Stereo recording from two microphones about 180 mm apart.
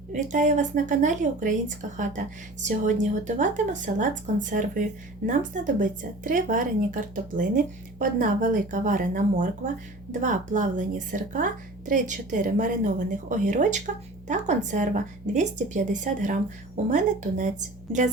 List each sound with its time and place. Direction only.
0.1 s a woman's voice: 45° right (ahead or behind)